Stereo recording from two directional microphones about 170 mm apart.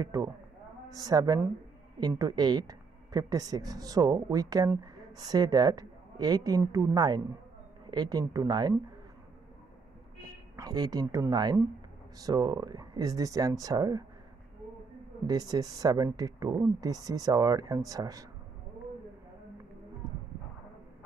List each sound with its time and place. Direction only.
0.0 s speech: 20° right (ahead or behind)
10.5 s speech: 20° right (ahead or behind)
15.2 s speech: 20° right (ahead or behind)